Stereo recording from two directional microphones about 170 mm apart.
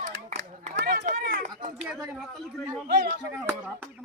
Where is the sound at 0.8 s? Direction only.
90° right.